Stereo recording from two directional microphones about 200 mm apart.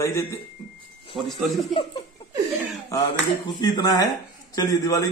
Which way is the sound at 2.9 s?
15° left (ahead or behind).